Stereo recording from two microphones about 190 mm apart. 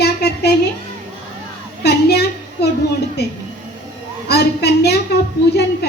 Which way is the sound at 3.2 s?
60° left (ahead or behind).